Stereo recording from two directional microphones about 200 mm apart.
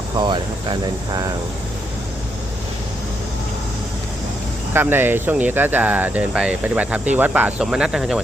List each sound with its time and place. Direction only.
0.2 s speech: 20° right (ahead or behind)
4.7 s speech: 10° right (ahead or behind)